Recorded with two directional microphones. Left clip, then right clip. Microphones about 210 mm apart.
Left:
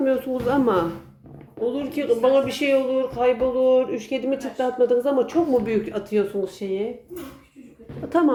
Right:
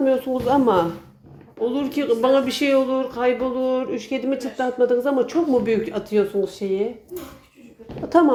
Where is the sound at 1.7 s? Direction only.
25° right (ahead or behind); by 6.9 s centre (ahead or behind).